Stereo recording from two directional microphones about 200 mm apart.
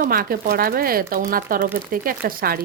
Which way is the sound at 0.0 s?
45° right (ahead or behind).